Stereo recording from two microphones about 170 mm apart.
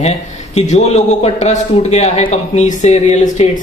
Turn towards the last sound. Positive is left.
turn(degrees=40)  # may be behind; listen again after turning